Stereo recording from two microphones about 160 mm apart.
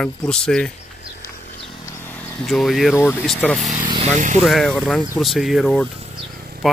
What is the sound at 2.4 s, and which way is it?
Speech, centre (ahead or behind).